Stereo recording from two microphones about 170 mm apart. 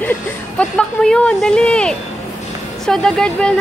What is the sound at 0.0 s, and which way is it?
Speech, 10° left (ahead or behind).